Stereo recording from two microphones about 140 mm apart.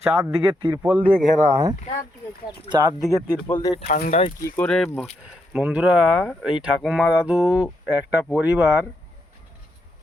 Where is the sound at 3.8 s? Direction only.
90° left.